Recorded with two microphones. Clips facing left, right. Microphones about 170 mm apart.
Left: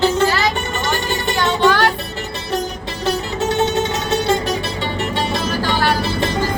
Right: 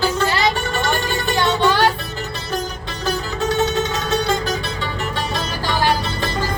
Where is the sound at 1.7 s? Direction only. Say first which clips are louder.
Left 2 dB; 15° right (ahead or behind).